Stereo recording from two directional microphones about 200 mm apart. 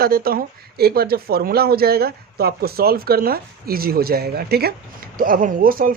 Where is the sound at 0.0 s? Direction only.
45° right (ahead or behind).